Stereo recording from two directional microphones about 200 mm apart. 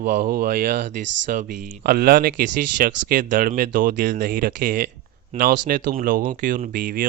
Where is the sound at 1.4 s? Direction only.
45° right (ahead or behind).